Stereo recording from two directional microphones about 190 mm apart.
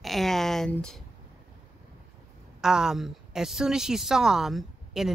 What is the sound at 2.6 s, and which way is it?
A woman's voice, 5° right (ahead or behind).